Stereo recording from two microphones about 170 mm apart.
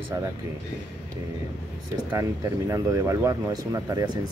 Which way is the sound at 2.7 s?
20° right (ahead or behind).